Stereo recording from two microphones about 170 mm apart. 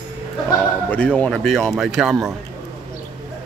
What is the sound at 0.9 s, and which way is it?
Speech, 10° left (ahead or behind).